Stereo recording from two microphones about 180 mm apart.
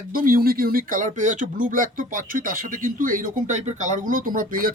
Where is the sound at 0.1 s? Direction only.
50° right (ahead or behind).